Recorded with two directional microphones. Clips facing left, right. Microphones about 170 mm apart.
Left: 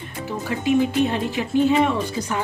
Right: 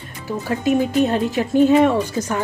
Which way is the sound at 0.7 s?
45° right (ahead or behind).